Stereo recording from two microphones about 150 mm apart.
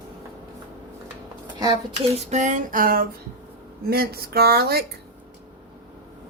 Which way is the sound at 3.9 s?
90° right.